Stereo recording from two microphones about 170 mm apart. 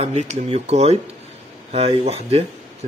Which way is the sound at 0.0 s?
40° right (ahead or behind).